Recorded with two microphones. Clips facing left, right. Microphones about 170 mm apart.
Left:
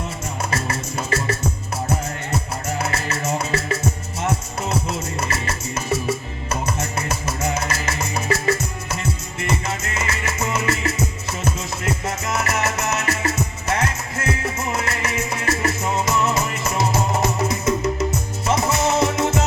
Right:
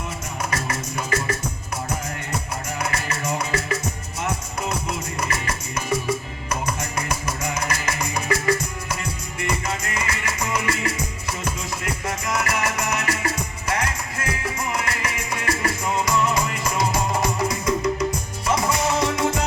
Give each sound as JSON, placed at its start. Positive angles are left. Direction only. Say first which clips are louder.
{"t": 0.5, "sound": "music", "louder": "left 2 dB", "side_deg": 30}
{"t": 2.7, "sound": "music", "louder": "left 2 dB", "side_deg": 30}
{"t": 5.3, "sound": "music", "louder": "left 2 dB", "side_deg": 25}